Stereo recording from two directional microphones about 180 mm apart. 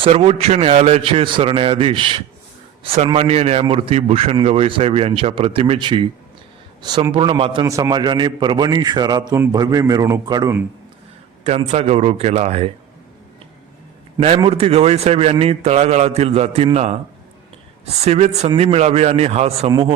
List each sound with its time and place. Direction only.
0.0 s a man's voice: 35° right (ahead or behind)
11.4 s a man's voice: 35° right (ahead or behind)
14.2 s a man's voice: 30° right (ahead or behind)